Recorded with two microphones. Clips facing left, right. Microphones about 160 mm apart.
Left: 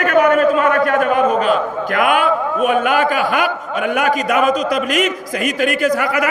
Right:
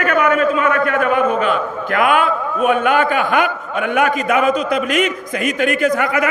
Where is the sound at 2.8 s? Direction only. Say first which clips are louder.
Even; 50° right (ahead or behind).